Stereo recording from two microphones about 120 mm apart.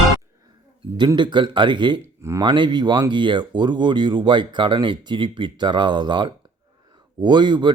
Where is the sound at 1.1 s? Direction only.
40° right (ahead or behind).